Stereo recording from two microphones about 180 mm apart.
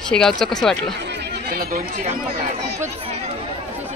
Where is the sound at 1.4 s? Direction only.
55° right (ahead or behind).